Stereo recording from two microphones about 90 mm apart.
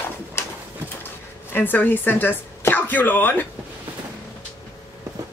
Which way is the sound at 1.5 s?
20° left (ahead or behind).